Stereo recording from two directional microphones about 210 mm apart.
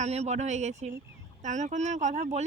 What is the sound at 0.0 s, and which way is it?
Speech, 30° right (ahead or behind).